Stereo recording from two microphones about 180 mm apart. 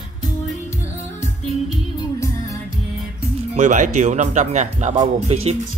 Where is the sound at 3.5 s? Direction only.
45° right (ahead or behind).